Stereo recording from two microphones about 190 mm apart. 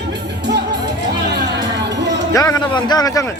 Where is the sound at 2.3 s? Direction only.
20° left (ahead or behind).